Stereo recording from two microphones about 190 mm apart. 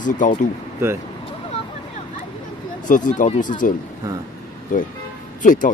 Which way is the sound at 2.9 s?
40° left (ahead or behind).